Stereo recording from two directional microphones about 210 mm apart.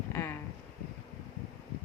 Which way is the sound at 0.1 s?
10° left (ahead or behind).